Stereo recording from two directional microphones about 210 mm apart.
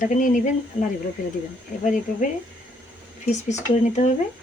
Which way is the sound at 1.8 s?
40° left (ahead or behind).